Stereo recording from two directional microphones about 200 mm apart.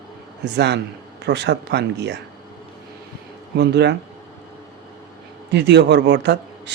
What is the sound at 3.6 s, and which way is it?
Speech, 55° right (ahead or behind).